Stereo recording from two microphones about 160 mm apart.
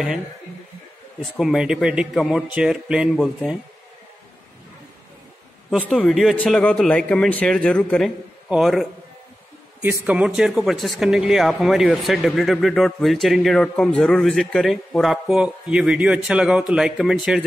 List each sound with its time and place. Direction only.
1.4 s speech: 5° right (ahead or behind)
5.7 s speech: centre (ahead or behind)
9.8 s speech: 20° right (ahead or behind)
10.0 s speech: 5° right (ahead or behind)